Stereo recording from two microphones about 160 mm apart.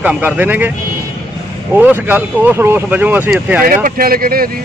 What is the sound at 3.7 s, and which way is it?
Speech, 65° right (ahead or behind).